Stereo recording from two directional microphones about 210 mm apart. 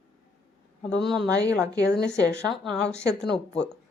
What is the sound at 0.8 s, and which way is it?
Speech, 5° left (ahead or behind).